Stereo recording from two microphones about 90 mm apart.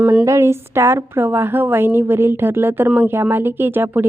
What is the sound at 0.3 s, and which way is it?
A woman's voice, 30° right (ahead or behind).